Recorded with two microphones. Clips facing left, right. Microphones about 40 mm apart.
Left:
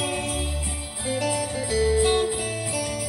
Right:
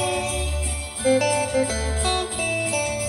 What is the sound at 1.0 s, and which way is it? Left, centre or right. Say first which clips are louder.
Music: right 7 dB; right.